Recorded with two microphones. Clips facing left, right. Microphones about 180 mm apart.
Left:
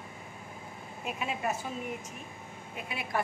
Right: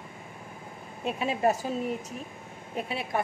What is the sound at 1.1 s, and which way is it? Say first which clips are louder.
Speech: right 8 dB; 35° right (ahead or behind).